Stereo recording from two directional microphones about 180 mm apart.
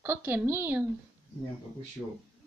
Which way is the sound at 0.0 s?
10° right (ahead or behind).